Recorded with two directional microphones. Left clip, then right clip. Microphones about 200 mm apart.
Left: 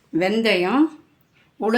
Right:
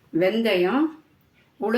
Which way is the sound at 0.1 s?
50° left (ahead or behind).